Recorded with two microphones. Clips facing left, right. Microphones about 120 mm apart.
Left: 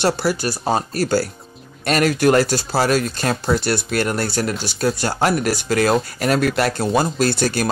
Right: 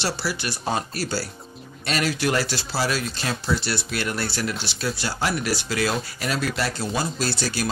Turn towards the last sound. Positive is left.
turn(degrees=50)  # may be behind; listen again after turning